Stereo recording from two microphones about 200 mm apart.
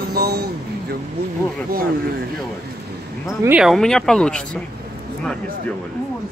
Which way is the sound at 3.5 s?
Centre (ahead or behind).